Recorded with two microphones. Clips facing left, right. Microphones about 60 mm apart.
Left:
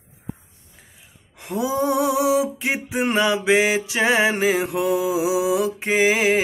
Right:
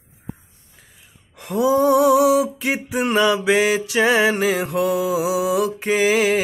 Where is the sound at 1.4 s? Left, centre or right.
Left.